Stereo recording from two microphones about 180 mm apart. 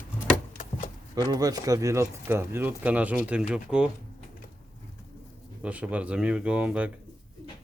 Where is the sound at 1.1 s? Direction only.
20° right (ahead or behind); by 3.8 s 5° right (ahead or behind).